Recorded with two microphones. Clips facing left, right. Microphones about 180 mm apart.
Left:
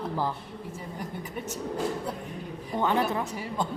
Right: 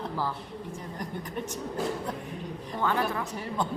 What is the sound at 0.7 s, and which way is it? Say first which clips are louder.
Speech: left 1 dB; 10° left (ahead or behind).